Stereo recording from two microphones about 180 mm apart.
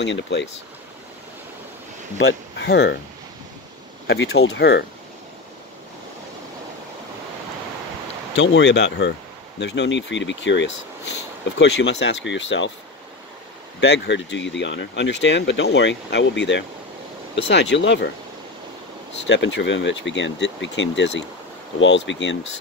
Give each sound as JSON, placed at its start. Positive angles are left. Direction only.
{"t": 0.0, "sound": "speech", "side_deg": 80}
{"t": 2.1, "sound": "speech", "side_deg": 80}
{"t": 4.1, "sound": "speech", "side_deg": 65}
{"t": 8.4, "sound": "speech", "side_deg": 80}
{"t": 13.7, "sound": "speech", "side_deg": 75}
{"t": 19.2, "sound": "speech", "side_deg": 85}
{"t": 21.7, "sound": "speech", "side_deg": 90}